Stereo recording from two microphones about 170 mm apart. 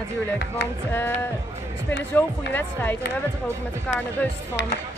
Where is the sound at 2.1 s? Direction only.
10° left (ahead or behind).